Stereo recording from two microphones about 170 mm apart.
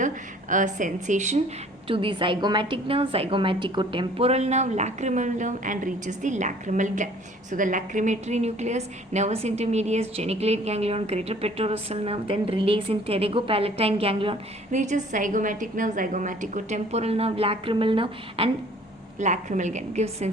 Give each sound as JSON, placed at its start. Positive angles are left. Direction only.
{"t": 0.0, "sound": "speech", "side_deg": -50}
{"t": 1.9, "sound": "a woman's voice", "side_deg": -30}
{"t": 14.7, "sound": "a woman's voice", "side_deg": -45}
{"t": 19.2, "sound": "a woman's voice", "side_deg": -45}